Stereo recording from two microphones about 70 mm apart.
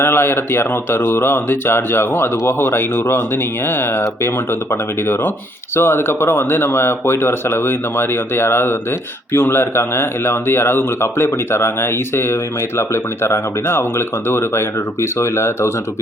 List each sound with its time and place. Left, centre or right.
0.0 s speech: left